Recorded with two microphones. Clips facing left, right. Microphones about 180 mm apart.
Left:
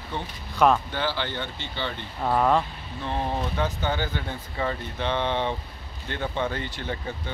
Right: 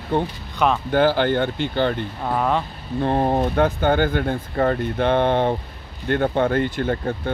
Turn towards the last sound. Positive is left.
turn(degrees=-50)  # may be behind; listen again after turning